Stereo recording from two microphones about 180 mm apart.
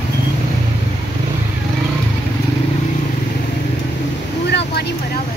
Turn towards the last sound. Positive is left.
turn(degrees=70)  # may be behind; listen again after turning